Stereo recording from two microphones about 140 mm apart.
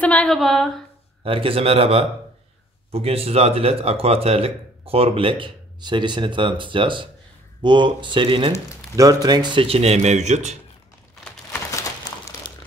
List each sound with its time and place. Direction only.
0.0 s speech: 10° left (ahead or behind)
1.2 s speech: 40° right (ahead or behind)
8.9 s speech: 25° right (ahead or behind); by 10.6 s 55° right (ahead or behind)
12.4 s crumpling: 35° left (ahead or behind)